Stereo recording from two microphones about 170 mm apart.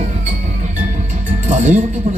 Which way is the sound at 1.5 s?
45° right (ahead or behind).